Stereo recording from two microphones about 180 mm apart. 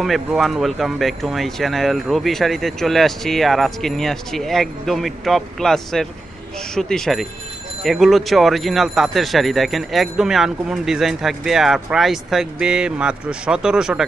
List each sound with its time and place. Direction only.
0.0 s speech: centre (ahead or behind)